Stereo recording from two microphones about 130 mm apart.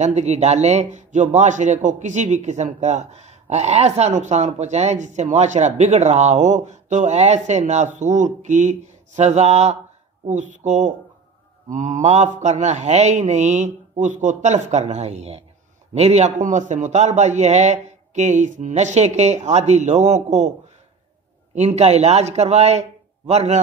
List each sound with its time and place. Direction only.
0.0 s speech: 60° right (ahead or behind)
21.5 s speech: 60° right (ahead or behind)